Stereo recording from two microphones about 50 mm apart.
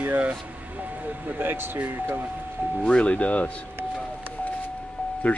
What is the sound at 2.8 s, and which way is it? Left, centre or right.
Speech, left.